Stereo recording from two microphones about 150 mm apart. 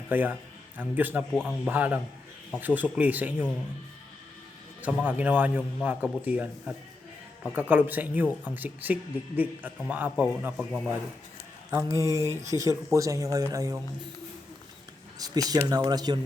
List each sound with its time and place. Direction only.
0.1 s speech: 10° right (ahead or behind)
1.3 s speech: 5° left (ahead or behind)
1.7 s speech: 10° right (ahead or behind)
4.8 s speech: 10° right (ahead or behind)
11.7 s speech: 20° right (ahead or behind)
15.2 s speech: 25° right (ahead or behind)